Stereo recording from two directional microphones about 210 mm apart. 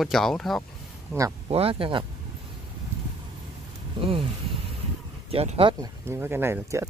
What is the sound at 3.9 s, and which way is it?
Speech, 25° right (ahead or behind).